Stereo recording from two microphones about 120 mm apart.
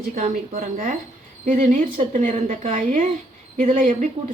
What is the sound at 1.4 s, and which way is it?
Speech, 90° right.